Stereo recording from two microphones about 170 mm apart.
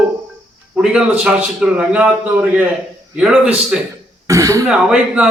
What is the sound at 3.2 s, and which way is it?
Speech, 5° right (ahead or behind).